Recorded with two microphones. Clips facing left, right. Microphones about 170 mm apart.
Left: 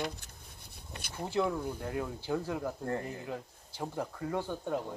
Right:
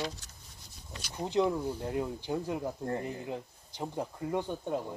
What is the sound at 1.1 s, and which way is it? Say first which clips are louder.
Speech: right 3 dB; 15° right (ahead or behind).